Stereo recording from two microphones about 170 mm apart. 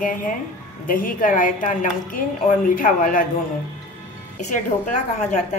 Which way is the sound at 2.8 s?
55° left (ahead or behind).